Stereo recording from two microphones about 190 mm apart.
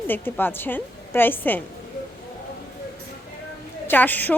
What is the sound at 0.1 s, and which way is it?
A woman's voice, 10° left (ahead or behind).